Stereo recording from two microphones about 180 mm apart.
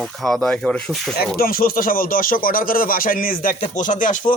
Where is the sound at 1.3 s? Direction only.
55° left (ahead or behind).